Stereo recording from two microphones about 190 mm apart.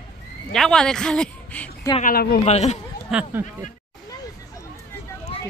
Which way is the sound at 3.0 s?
5° right (ahead or behind).